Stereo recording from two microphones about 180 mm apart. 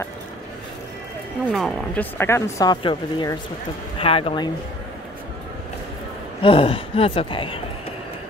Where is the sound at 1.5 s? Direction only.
Centre (ahead or behind).